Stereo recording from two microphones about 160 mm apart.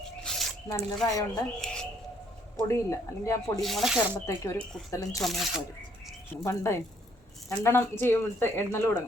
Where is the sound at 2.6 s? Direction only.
15° left (ahead or behind).